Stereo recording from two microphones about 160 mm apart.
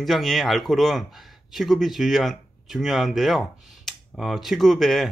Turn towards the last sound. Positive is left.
turn(degrees=0)  # may be behind; listen again after turning